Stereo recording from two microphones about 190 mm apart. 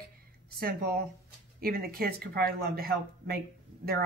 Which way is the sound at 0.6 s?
50° right (ahead or behind).